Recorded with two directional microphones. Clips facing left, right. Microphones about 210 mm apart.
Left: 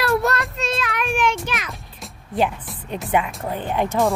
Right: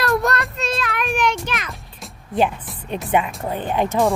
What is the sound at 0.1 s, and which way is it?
Child singing, centre (ahead or behind).